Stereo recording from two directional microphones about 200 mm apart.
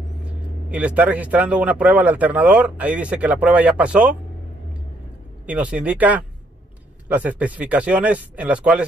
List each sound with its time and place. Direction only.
0.2 s speech: 5° right (ahead or behind)
5.5 s speech: 5° right (ahead or behind)